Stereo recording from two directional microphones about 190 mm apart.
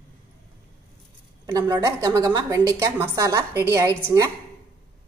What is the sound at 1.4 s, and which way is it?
A woman's voice, 20° right (ahead or behind).